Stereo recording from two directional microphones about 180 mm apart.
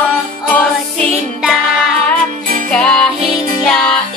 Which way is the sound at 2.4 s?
50° right (ahead or behind).